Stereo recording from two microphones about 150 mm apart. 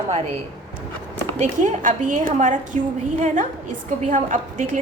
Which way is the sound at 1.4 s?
55° right (ahead or behind).